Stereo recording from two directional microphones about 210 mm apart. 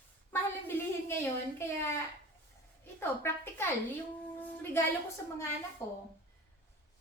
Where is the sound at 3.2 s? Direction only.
10° left (ahead or behind).